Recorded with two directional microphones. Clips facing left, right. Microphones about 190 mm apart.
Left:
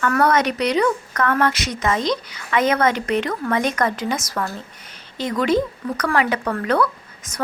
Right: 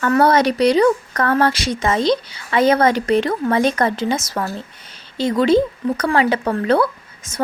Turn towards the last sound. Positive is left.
turn(degrees=-25)  # may be behind; listen again after turning